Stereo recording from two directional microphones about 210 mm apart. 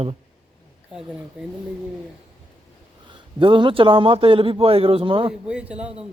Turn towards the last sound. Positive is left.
turn(degrees=-5)  # may be behind; listen again after turning